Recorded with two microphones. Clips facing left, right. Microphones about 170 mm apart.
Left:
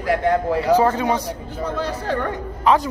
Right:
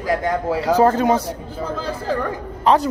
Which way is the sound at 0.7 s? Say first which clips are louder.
Right 4 dB; 45° right (ahead or behind).